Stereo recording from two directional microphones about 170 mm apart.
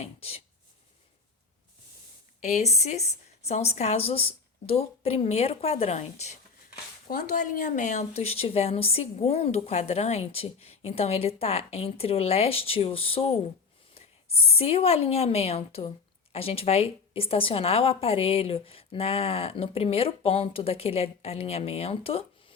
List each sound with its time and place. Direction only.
0.0 s a woman's voice: 35° left (ahead or behind)
2.4 s a woman's voice: 40° left (ahead or behind)
7.1 s a woman's voice: 50° left (ahead or behind); by 22.5 s 35° left (ahead or behind)